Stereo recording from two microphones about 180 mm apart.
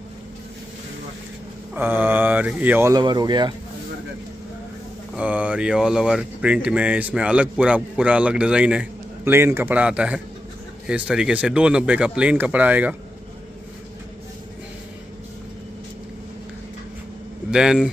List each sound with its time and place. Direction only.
1.8 s speech: 10° right (ahead or behind)
3.0 s speech: 25° right (ahead or behind)
5.1 s speech: 5° right (ahead or behind)
17.5 s speech: 5° right (ahead or behind)